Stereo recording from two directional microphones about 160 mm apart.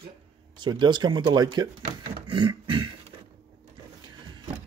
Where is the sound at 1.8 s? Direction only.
30° right (ahead or behind).